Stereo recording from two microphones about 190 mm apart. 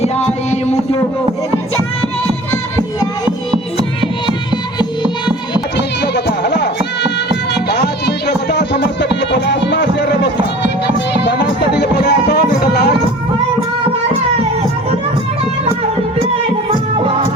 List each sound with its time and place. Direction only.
0.0 s music: 35° left (ahead or behind)
4.5 s music: 25° left (ahead or behind)
5.7 s music: 60° left (ahead or behind)